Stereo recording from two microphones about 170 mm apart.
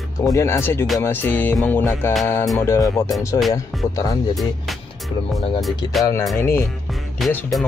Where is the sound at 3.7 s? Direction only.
Centre (ahead or behind).